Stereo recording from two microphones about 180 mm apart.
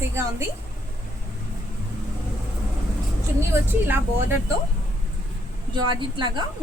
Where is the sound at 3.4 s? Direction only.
10° right (ahead or behind).